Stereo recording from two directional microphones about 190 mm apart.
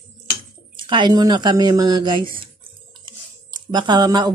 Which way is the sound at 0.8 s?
25° right (ahead or behind).